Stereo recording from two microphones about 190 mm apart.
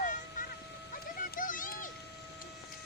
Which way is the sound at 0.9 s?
50° left (ahead or behind).